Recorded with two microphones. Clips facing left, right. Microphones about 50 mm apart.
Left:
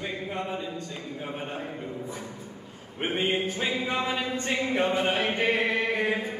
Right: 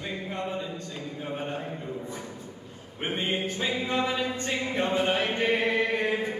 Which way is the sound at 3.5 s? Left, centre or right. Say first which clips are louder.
Even; left.